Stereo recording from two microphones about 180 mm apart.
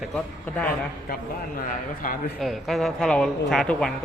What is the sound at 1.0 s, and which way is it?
Speech, 50° left (ahead or behind).